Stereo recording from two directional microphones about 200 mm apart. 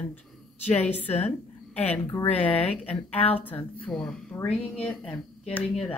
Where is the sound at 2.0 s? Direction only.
10° left (ahead or behind).